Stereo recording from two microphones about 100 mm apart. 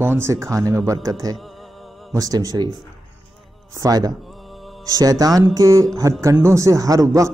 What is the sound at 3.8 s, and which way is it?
A man's voice, 40° right (ahead or behind).